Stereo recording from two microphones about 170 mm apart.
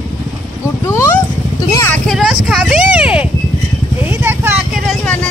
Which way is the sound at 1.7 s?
15° left (ahead or behind).